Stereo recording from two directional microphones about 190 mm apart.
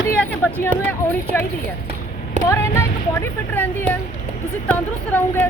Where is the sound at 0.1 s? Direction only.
10° left (ahead or behind).